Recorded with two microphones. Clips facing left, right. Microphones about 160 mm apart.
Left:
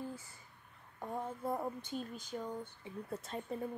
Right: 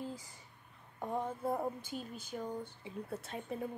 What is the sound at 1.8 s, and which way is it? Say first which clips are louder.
Speech: left 1 dB; 5° right (ahead or behind).